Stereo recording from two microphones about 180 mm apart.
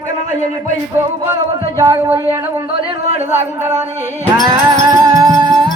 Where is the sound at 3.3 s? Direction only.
15° right (ahead or behind).